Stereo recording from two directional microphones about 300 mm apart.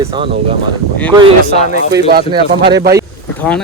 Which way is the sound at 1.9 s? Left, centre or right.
Right.